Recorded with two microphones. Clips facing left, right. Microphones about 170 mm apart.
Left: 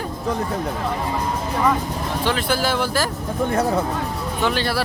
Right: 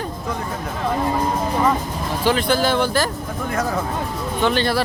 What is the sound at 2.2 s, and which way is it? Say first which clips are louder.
Speech: right 4 dB; 5° left (ahead or behind).